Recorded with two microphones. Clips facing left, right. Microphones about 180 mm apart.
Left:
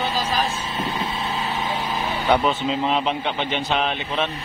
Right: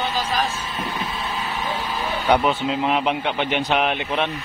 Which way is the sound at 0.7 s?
25° left (ahead or behind).